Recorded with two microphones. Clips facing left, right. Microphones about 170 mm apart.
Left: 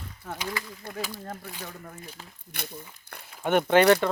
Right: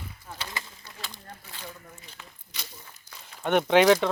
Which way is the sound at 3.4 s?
Centre (ahead or behind).